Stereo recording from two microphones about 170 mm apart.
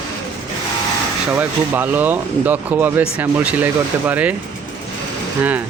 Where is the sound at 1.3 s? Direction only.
10° right (ahead or behind).